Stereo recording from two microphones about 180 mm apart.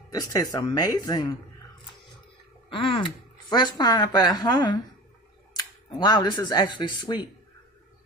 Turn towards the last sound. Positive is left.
turn(degrees=25)  # may be behind; listen again after turning